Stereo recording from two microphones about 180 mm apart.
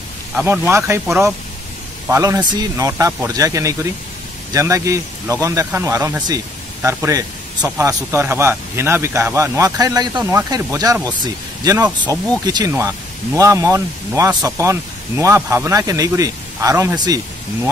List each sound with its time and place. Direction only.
0.4 s speech: 15° right (ahead or behind)
1.0 s speech: centre (ahead or behind)
2.0 s speech: 15° right (ahead or behind)